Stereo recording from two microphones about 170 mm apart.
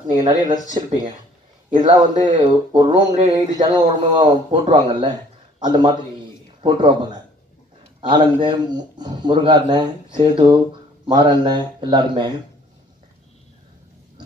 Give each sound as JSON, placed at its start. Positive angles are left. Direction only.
{"t": 0.2, "sound": "speech", "side_deg": -25}